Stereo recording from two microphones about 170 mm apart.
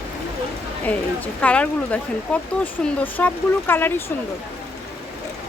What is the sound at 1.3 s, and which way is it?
A woman's voice, 5° left (ahead or behind).